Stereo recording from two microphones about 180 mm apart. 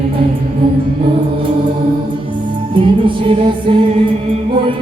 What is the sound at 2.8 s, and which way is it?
Music, 30° right (ahead or behind).